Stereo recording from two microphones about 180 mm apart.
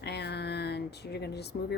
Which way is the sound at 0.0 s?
70° left (ahead or behind).